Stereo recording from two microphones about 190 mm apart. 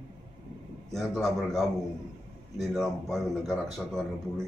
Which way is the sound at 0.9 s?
Centre (ahead or behind).